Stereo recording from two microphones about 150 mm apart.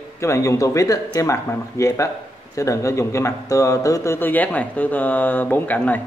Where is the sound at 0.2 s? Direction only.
20° left (ahead or behind).